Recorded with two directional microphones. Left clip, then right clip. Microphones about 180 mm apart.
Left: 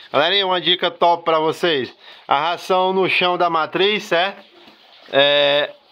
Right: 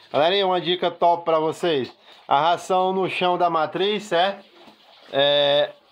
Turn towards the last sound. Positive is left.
turn(degrees=15)  # may be behind; listen again after turning